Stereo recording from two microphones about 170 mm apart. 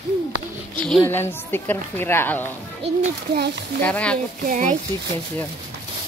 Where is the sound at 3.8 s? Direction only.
5° left (ahead or behind).